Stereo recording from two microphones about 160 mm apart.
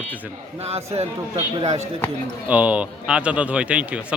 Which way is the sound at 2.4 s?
10° right (ahead or behind).